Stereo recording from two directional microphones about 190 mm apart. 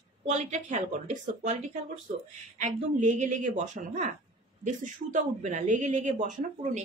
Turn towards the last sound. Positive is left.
turn(degrees=-40)  # may be behind; listen again after turning